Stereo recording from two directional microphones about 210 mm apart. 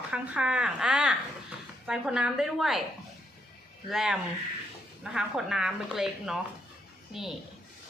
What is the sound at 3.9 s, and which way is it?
Speech, centre (ahead or behind).